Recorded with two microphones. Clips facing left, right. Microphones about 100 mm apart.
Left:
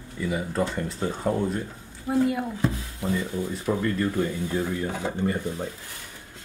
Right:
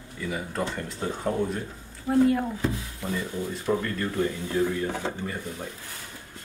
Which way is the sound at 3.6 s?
10° left (ahead or behind).